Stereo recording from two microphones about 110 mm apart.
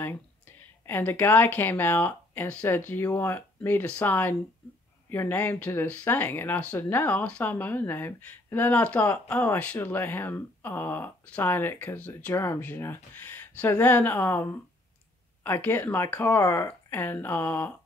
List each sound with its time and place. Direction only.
0.8 s speech: 20° left (ahead or behind)
12.4 s speech: 25° left (ahead or behind)